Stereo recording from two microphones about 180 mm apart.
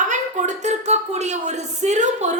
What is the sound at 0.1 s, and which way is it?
A woman's voice, 40° right (ahead or behind).